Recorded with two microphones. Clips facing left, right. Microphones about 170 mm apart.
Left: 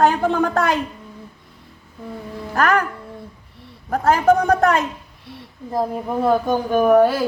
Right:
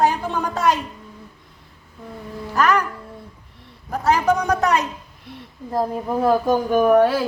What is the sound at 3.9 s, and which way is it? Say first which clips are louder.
Speech: left 3 dB; 50° left (ahead or behind).